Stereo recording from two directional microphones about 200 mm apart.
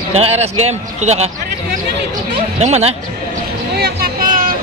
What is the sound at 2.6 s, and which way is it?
Speech, 35° right (ahead or behind).